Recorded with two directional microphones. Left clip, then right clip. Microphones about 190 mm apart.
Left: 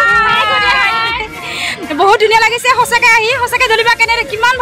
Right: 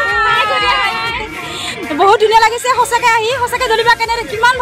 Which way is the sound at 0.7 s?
10° left (ahead or behind).